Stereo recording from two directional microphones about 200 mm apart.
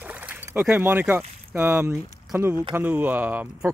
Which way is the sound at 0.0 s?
5° right (ahead or behind).